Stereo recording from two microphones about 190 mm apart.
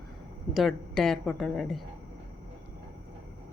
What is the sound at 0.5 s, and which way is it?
A woman's voice, centre (ahead or behind).